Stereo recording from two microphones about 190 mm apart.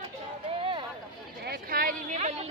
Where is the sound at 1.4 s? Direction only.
55° right (ahead or behind); by 2.5 s 35° right (ahead or behind).